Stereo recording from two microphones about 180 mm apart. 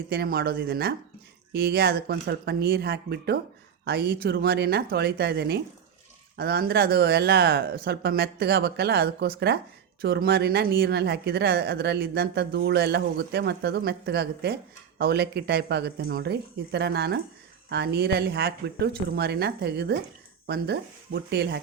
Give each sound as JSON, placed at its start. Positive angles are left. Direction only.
{"t": 0.1, "sound": "a woman's voice", "side_deg": -60}